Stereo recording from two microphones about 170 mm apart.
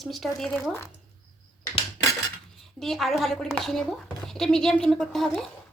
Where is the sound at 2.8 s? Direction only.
Centre (ahead or behind).